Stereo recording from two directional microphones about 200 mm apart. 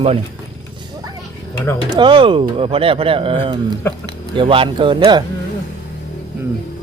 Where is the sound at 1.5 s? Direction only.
15° left (ahead or behind).